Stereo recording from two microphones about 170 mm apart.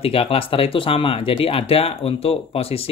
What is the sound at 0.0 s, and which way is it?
Speech, 35° left (ahead or behind).